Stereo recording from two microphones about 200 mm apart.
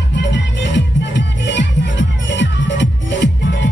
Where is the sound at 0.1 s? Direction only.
60° left (ahead or behind).